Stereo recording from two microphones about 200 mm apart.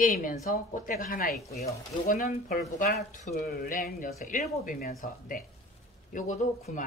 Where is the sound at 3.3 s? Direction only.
50° left (ahead or behind).